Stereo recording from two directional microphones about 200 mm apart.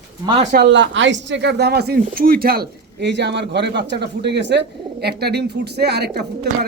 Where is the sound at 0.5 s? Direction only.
60° right (ahead or behind).